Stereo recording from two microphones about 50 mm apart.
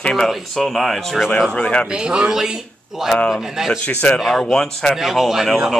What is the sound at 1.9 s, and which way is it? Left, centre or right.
Speech, centre.